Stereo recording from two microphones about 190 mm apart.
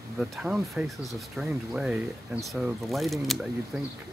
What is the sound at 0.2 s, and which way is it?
Speech, centre (ahead or behind).